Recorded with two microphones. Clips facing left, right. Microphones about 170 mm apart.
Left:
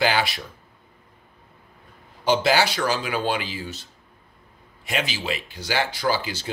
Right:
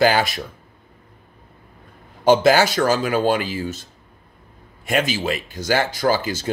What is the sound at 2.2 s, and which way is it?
Speech, 50° right (ahead or behind).